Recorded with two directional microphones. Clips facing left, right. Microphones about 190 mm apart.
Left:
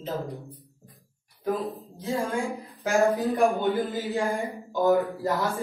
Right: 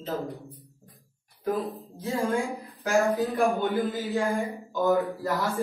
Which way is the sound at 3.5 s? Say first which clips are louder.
Left 1 dB; 15° left (ahead or behind).